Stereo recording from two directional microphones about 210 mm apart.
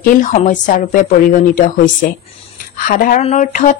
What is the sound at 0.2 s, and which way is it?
Speech, 40° left (ahead or behind).